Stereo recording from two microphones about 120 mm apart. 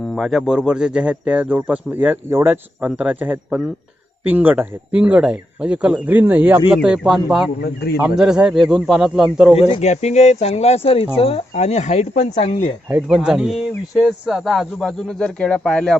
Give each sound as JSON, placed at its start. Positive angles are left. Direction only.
{"t": 0.0, "sound": "speech", "side_deg": 0}
{"t": 9.8, "sound": "speech", "side_deg": 65}
{"t": 13.1, "sound": "speech", "side_deg": -5}